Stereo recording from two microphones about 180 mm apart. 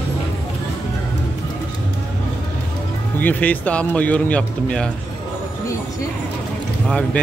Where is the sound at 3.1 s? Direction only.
10° left (ahead or behind).